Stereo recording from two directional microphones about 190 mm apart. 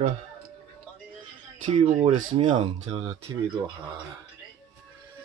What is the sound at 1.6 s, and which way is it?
Speech, 35° right (ahead or behind).